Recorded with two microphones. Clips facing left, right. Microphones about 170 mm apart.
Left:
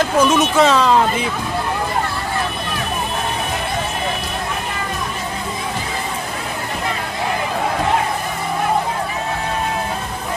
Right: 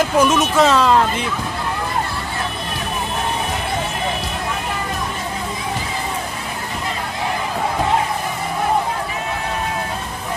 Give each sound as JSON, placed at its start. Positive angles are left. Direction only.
{"t": 0.0, "sound": "speech", "side_deg": 0}